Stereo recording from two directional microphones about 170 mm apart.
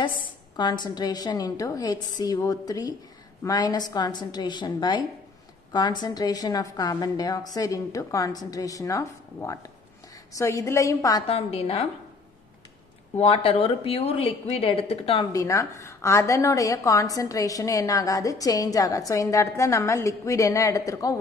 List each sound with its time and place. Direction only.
0.0 s a woman's voice: 25° left (ahead or behind)
11.2 s speech: 35° left (ahead or behind)
13.1 s speech: 35° left (ahead or behind)
15.3 s a woman's voice: 20° left (ahead or behind)